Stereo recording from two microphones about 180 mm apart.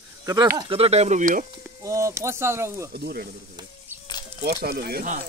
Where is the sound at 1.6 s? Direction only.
15° right (ahead or behind).